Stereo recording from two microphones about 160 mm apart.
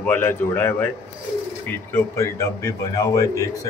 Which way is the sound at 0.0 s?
10° left (ahead or behind).